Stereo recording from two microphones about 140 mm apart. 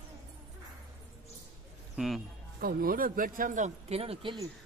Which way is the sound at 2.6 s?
90° right.